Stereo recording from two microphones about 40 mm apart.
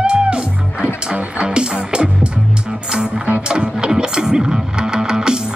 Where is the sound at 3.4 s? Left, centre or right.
Right.